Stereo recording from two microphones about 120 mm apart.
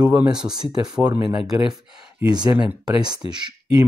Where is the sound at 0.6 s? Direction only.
35° right (ahead or behind).